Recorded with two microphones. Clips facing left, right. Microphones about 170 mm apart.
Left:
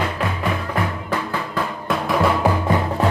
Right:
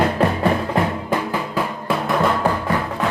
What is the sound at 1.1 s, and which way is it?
Music, 15° right (ahead or behind).